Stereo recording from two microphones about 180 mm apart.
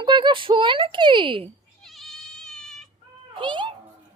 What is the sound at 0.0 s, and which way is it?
Speech, 25° right (ahead or behind).